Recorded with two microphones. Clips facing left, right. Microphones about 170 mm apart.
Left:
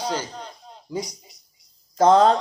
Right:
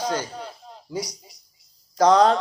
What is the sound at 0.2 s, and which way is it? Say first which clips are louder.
Speech: right 1 dB; 10° right (ahead or behind).